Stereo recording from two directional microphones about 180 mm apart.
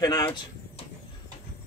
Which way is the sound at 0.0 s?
25° left (ahead or behind).